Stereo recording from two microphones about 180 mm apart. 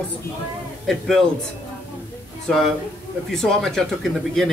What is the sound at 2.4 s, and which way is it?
Speech, centre (ahead or behind).